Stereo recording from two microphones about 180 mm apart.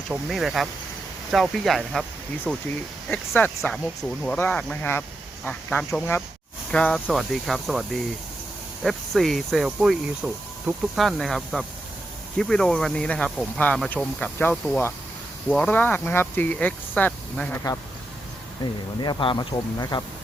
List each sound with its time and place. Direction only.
0.1 s speech: centre (ahead or behind)
18.6 s speech: 25° left (ahead or behind)